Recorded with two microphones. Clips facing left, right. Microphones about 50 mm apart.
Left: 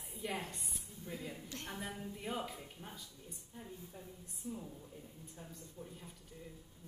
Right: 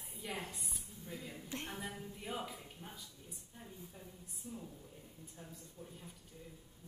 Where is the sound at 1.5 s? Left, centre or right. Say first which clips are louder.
Right 2 dB; right.